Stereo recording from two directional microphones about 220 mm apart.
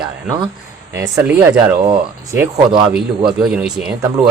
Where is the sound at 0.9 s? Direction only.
15° right (ahead or behind).